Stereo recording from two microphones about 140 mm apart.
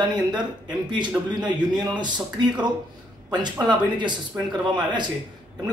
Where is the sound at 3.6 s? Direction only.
35° right (ahead or behind).